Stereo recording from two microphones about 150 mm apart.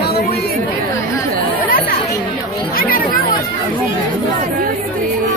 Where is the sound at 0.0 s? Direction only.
90° left.